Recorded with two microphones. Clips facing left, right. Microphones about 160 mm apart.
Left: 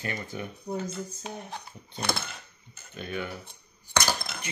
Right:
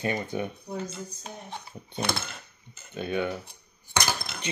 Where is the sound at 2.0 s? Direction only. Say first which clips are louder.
Right 1 dB; centre (ahead or behind).